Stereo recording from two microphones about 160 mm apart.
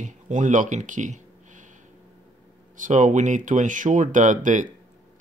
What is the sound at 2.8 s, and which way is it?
Speech, 55° right (ahead or behind).